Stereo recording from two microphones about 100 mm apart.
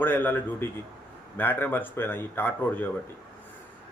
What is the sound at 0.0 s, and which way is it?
A man's voice, 20° left (ahead or behind).